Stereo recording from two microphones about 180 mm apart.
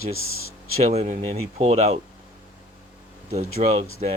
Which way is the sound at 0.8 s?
40° right (ahead or behind).